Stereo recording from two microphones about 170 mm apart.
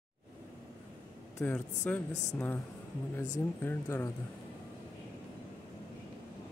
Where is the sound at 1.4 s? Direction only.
10° left (ahead or behind).